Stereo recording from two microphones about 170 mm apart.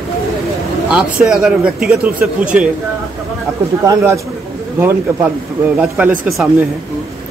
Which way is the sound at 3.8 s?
20° right (ahead or behind).